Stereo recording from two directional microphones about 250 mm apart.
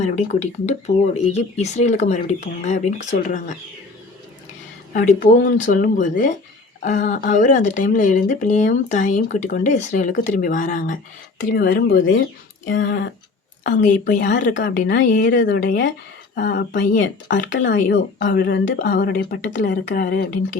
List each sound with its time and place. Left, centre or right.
0.0 s speech: left
5.2 s speech: left
13.7 s speech: left